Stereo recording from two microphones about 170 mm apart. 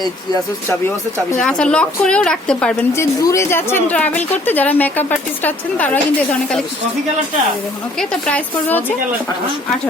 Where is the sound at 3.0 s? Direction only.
15° left (ahead or behind).